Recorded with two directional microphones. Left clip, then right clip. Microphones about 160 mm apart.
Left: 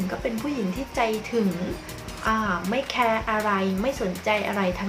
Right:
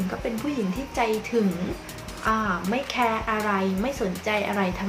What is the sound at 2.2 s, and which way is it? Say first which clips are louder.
Speech: even; centre (ahead or behind).